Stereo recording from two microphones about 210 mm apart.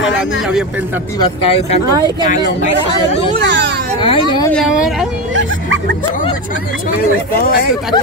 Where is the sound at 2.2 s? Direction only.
35° left (ahead or behind).